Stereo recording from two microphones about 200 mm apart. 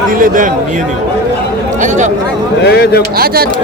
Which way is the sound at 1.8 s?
35° right (ahead or behind).